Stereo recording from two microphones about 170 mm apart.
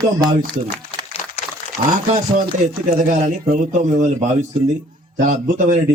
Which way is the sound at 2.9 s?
50° right (ahead or behind).